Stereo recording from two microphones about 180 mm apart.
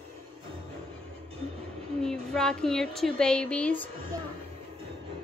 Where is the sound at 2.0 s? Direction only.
5° left (ahead or behind).